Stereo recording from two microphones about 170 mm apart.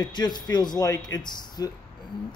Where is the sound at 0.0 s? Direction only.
25° left (ahead or behind).